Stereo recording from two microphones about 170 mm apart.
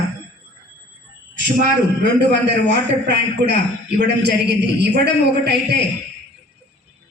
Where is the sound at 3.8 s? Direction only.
90° right.